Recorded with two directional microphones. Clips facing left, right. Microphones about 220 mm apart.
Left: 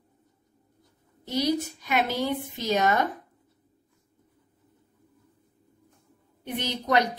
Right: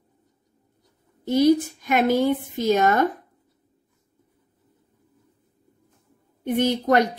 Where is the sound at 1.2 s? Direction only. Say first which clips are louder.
Right 9 dB; 50° right (ahead or behind).